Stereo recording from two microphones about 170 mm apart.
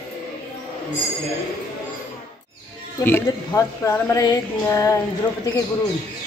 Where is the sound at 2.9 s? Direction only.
15° left (ahead or behind).